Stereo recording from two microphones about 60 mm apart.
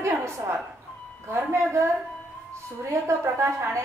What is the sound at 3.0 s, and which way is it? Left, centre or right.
Speech, right.